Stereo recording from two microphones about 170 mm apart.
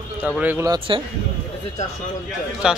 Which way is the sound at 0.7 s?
30° right (ahead or behind).